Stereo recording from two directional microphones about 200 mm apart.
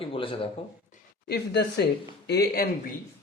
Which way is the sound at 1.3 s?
55° left (ahead or behind).